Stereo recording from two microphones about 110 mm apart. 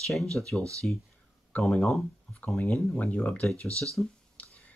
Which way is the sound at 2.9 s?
15° left (ahead or behind).